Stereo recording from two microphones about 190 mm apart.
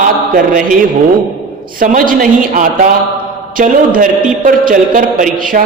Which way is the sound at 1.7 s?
45° right (ahead or behind).